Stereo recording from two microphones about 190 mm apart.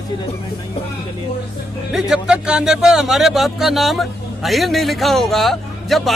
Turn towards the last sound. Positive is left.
turn(degrees=0)  # may be behind; listen again after turning